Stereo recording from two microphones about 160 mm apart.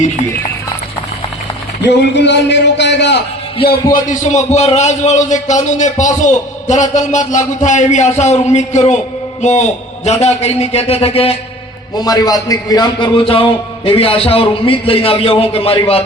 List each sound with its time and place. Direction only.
1.9 s a man's voice: 90° left
4.1 s a man's voice: 50° left (ahead or behind)
11.9 s a man's voice: 25° left (ahead or behind)